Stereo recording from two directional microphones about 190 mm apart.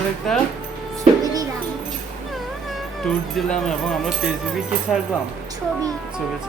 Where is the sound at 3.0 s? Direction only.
Centre (ahead or behind).